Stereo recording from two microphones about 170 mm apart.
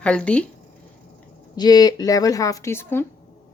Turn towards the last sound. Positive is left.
turn(degrees=15)  # may be behind; listen again after turning